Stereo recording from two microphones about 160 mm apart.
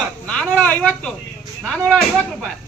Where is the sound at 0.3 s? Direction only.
10° left (ahead or behind).